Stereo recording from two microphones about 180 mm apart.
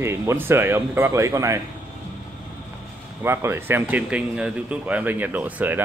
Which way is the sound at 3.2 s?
15° right (ahead or behind).